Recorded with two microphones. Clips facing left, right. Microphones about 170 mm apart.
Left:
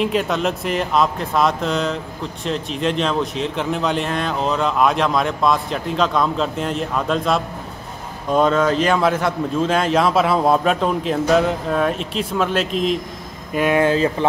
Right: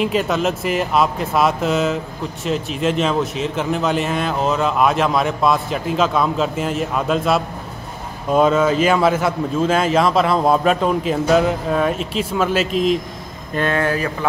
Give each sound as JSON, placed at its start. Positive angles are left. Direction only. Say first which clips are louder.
{"t": 0.0, "sound": "speech", "louder": "right 1 dB", "side_deg": 0}
{"t": 13.5, "sound": "speech", "louder": "left 3 dB", "side_deg": 10}